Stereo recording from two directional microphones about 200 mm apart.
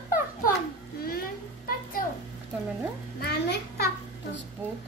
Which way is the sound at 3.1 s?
50° left (ahead or behind).